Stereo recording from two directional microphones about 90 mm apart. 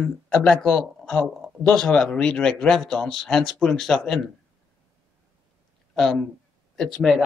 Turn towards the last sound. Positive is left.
turn(degrees=0)  # may be behind; listen again after turning